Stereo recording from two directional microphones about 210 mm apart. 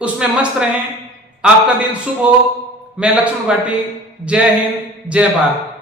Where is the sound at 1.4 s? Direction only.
5° right (ahead or behind).